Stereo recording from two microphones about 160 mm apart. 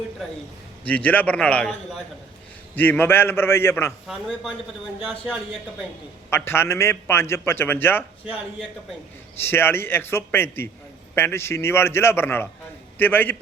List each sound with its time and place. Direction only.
0.9 s a man's voice: 10° left (ahead or behind)
4.0 s speech: centre (ahead or behind)
6.3 s a man's voice: 15° left (ahead or behind)
9.4 s a man's voice: 15° left (ahead or behind)